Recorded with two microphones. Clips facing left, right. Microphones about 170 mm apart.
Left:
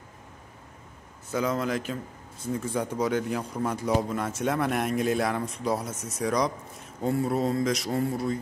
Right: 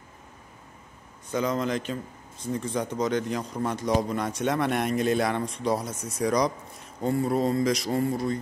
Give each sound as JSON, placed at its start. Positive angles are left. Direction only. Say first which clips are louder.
{"t": 1.3, "sound": "speech", "louder": "right 1 dB", "side_deg": 5}